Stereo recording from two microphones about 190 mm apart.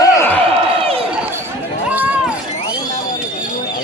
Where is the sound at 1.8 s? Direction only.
10° right (ahead or behind).